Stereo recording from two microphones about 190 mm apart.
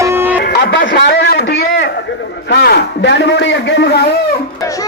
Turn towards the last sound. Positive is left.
turn(degrees=60)  # may be behind; listen again after turning